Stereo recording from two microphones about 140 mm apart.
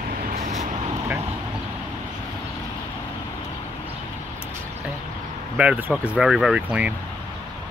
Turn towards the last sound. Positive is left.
turn(degrees=-5)  # may be behind; listen again after turning